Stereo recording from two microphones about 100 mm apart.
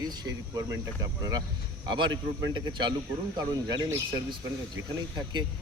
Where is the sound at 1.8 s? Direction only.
50° right (ahead or behind).